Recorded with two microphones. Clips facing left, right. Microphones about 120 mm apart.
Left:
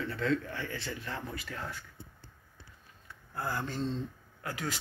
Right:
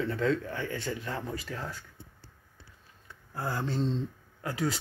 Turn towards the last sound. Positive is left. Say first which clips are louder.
# right 6 dB
turn(degrees=-30)  # may be behind; listen again after turning